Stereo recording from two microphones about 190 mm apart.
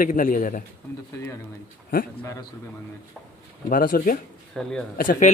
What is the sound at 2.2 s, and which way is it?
Speech, 15° left (ahead or behind).